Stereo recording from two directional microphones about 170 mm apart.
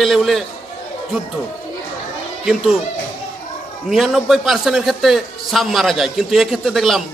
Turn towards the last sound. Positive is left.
turn(degrees=0)  # may be behind; listen again after turning